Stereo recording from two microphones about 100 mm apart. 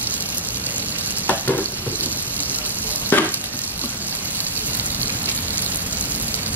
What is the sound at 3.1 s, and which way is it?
Stir, 20° left (ahead or behind).